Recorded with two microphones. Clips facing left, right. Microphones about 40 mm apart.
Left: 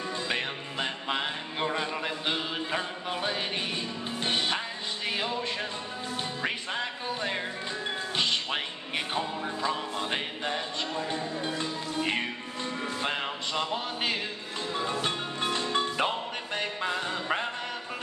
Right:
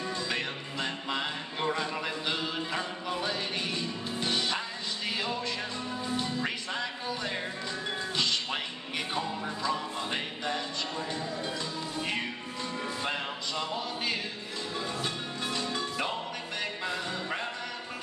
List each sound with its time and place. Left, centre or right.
0.3 s music: left